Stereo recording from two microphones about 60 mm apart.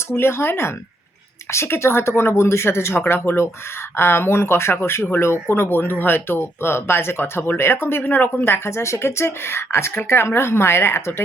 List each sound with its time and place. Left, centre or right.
0.2 s speech: left
3.0 s speech: left